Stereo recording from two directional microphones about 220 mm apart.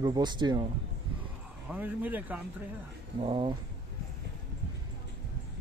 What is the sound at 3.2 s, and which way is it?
Speech, 25° right (ahead or behind).